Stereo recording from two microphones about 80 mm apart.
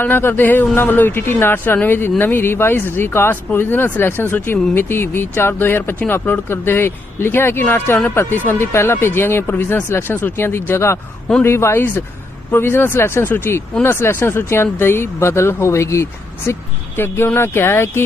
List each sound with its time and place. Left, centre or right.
0.0 s speech: left